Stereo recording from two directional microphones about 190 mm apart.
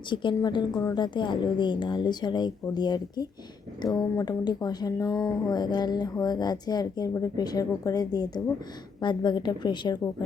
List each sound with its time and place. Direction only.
0.1 s a woman's voice: 25° left (ahead or behind)